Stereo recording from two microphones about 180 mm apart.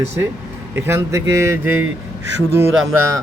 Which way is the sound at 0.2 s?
15° right (ahead or behind).